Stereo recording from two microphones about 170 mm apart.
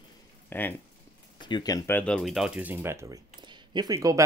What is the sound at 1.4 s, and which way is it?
Speech, 25° left (ahead or behind).